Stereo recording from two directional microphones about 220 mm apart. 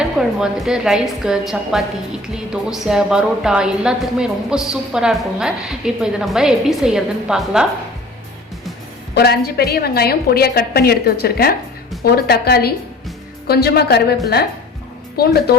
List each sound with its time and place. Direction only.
0.2 s a woman's voice: centre (ahead or behind)
9.1 s a woman's voice: 45° left (ahead or behind)